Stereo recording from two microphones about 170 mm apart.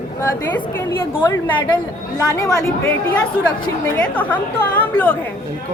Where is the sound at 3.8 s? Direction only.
10° left (ahead or behind).